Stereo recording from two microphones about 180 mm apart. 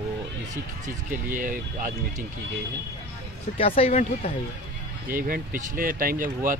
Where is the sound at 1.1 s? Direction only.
50° right (ahead or behind).